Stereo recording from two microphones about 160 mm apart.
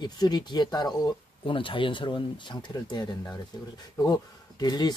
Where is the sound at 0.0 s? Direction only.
25° left (ahead or behind).